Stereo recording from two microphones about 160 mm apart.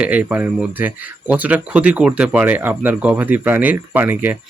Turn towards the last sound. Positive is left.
turn(degrees=-10)  # may be behind; listen again after turning